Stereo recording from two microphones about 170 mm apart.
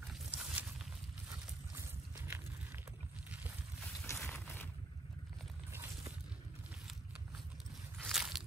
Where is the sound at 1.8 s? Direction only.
15° right (ahead or behind).